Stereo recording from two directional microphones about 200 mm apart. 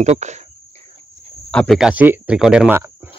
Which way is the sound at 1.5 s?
5° left (ahead or behind).